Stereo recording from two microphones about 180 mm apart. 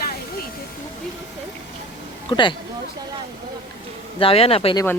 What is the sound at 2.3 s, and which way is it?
Speech, 25° left (ahead or behind).